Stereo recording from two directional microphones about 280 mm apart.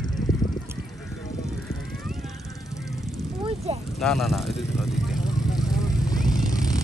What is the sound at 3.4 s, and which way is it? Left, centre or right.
Vehicle, right.